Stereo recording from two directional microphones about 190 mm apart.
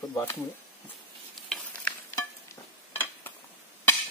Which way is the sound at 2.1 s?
15° left (ahead or behind).